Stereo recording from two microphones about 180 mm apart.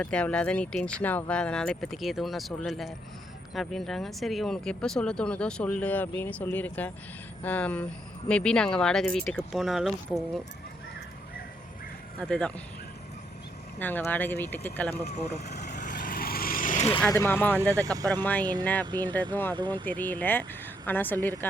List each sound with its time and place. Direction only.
0.0 s speech: 5° left (ahead or behind)
12.2 s speech: 5° left (ahead or behind)
13.7 s speech: 10° left (ahead or behind)
15.0 s speech: 35° left (ahead or behind)
15.5 s vehicle: 40° left (ahead or behind)
17.1 s speech: 15° left (ahead or behind)
17.8 s speech: 20° right (ahead or behind)
18.1 s speech: 10° left (ahead or behind)
18.9 s speech: 25° right (ahead or behind)
19.1 s speech: 10° left (ahead or behind)
19.5 s speech: 25° right (ahead or behind)
19.8 s speech: 10° left (ahead or behind)